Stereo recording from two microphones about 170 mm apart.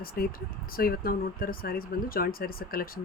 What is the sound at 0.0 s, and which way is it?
Speech, 60° left (ahead or behind).